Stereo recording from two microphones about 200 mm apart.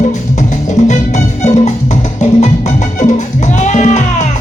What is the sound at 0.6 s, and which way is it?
Music, 35° left (ahead or behind).